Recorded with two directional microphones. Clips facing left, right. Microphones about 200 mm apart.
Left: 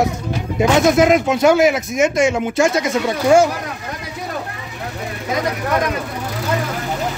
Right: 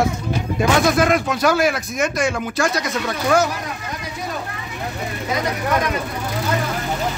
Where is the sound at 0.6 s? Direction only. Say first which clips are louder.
Left 4 dB; 20° left (ahead or behind).